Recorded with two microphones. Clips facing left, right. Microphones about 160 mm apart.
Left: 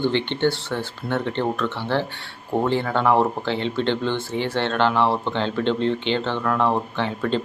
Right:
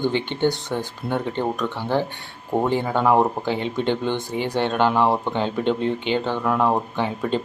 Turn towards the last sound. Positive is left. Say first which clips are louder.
# even
turn(degrees=-10)  # may be behind; listen again after turning